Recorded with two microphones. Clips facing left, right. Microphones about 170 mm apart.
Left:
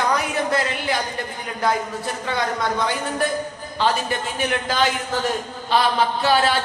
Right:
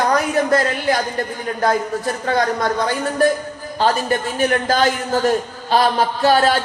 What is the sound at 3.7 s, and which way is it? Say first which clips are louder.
A man's voice: right 4 dB; 45° right (ahead or behind).